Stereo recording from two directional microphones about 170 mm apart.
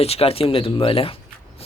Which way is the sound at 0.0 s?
35° left (ahead or behind).